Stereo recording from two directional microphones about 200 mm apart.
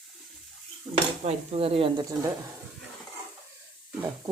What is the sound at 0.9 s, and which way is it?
Speech, 20° right (ahead or behind).